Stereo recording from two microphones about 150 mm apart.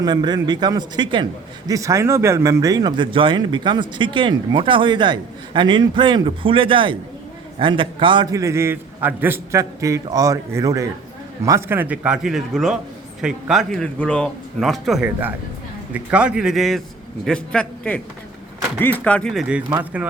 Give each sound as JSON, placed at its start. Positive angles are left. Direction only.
{"t": 0.0, "sound": "a man's voice", "side_deg": -30}
{"t": 19.3, "sound": "a man's voice", "side_deg": -5}